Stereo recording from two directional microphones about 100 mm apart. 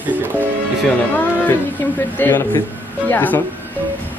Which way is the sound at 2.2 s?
20° left (ahead or behind).